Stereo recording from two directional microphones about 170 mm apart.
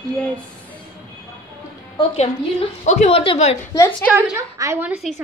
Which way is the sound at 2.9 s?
40° left (ahead or behind).